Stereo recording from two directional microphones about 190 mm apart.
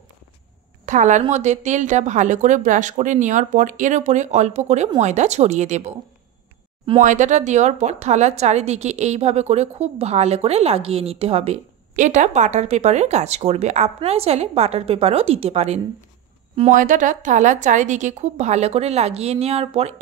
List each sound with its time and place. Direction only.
0.8 s a woman's voice: 40° right (ahead or behind)
7.0 s a woman's voice: 40° right (ahead or behind)